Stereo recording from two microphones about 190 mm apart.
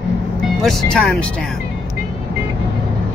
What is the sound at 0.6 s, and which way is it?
Speech, centre (ahead or behind).